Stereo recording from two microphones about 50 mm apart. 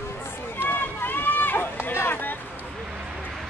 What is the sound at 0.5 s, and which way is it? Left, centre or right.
Run, left.